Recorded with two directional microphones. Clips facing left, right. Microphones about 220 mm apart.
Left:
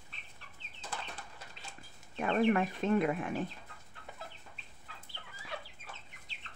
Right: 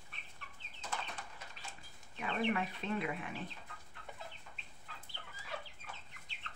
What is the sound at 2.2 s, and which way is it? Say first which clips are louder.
Speech: left 7 dB; 50° left (ahead or behind).